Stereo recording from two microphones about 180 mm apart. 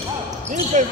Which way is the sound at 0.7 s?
45° right (ahead or behind).